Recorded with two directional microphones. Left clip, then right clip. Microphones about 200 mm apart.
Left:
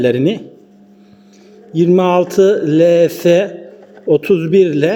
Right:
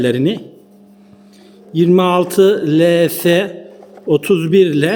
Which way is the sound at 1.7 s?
15° right (ahead or behind).